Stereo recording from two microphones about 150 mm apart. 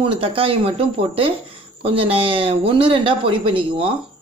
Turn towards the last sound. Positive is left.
turn(degrees=-35)  # may be behind; listen again after turning